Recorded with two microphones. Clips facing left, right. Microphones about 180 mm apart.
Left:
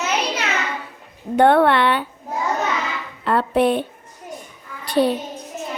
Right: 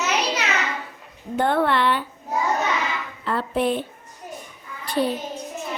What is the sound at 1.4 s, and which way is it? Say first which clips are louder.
Speech: left 6 dB; 65° left (ahead or behind).